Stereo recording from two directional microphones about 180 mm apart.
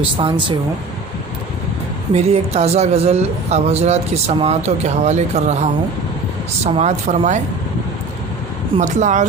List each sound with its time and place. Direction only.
0.2 s speech: 25° right (ahead or behind)
2.1 s a man's voice: 35° right (ahead or behind)
6.7 s a man's voice: 40° right (ahead or behind)
8.8 s speech: 40° right (ahead or behind)